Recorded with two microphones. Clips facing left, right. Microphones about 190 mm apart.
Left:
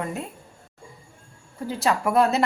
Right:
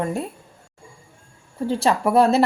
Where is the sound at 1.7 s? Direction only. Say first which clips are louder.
Right 4 dB; 30° right (ahead or behind).